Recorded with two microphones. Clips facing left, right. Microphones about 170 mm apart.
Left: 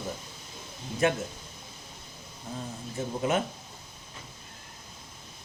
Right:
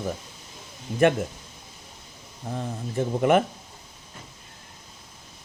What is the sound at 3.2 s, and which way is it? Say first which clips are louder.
Speech: right 8 dB; 60° right (ahead or behind).